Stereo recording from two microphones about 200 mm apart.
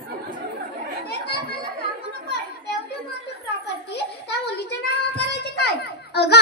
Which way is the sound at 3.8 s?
55° left (ahead or behind).